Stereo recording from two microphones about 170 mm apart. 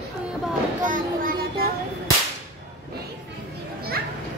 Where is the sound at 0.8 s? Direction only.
55° right (ahead or behind).